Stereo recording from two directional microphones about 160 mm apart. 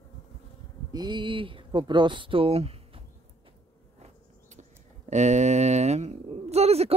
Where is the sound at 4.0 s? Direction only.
50° right (ahead or behind).